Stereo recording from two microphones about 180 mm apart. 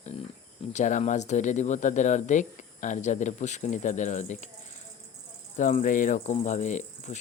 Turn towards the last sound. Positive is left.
turn(degrees=40)  # may be behind; listen again after turning